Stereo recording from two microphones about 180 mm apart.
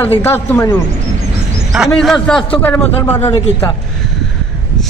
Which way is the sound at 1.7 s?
Centre (ahead or behind).